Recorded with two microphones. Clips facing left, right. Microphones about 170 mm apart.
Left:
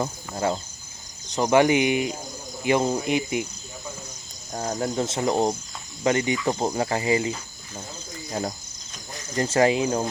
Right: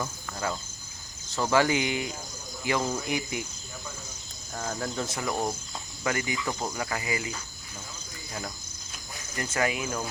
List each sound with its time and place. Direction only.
0.0 s speech: 30° left (ahead or behind)
4.5 s speech: 35° left (ahead or behind)
4.9 s speech: 25° left (ahead or behind)
8.3 s speech: 40° left (ahead or behind)
9.3 s speech: 30° left (ahead or behind)